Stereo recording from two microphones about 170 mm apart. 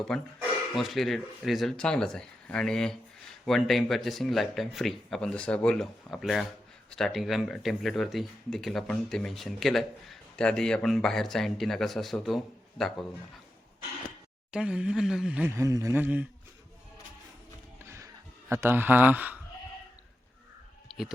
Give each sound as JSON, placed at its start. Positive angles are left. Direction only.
{"t": 0.1, "sound": "speech", "side_deg": 0}
{"t": 14.5, "sound": "speech", "side_deg": -5}
{"t": 15.5, "sound": "a man's voice", "side_deg": -20}
{"t": 17.7, "sound": "a sound", "side_deg": -15}